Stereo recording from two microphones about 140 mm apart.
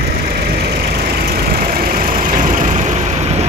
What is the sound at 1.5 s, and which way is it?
Vehicle, 90° right.